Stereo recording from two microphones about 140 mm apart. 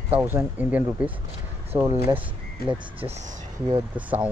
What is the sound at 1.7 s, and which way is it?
Speech, 25° right (ahead or behind).